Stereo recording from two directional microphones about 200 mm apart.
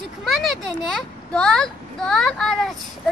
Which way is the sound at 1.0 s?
5° left (ahead or behind).